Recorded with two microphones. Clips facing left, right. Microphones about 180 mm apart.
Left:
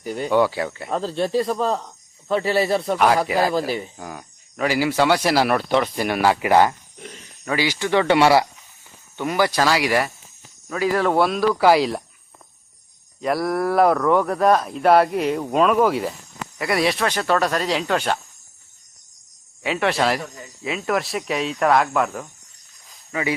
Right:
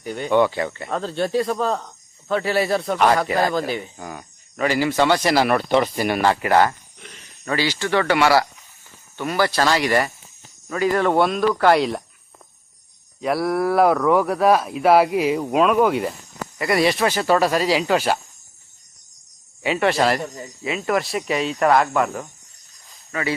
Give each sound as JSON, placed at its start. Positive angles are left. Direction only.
{"t": 0.0, "sound": "speech", "side_deg": 0}
{"t": 6.3, "sound": "speech", "side_deg": 15}
{"t": 13.2, "sound": "speech", "side_deg": 0}
{"t": 19.6, "sound": "speech", "side_deg": 0}